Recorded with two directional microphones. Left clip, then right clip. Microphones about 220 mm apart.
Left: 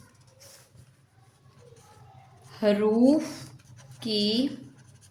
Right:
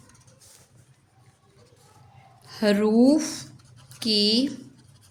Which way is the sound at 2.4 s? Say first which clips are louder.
Right 1 dB; 45° right (ahead or behind).